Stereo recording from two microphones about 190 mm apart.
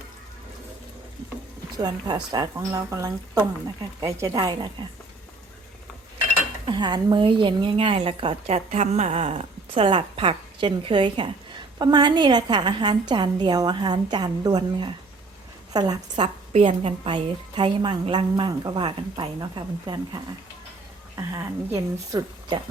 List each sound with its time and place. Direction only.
1.8 s a woman's voice: 20° right (ahead or behind)
6.7 s a woman's voice: 25° right (ahead or behind)